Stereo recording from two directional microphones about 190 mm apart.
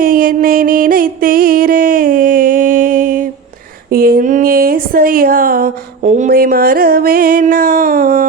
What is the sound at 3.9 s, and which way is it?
Speech, 50° right (ahead or behind).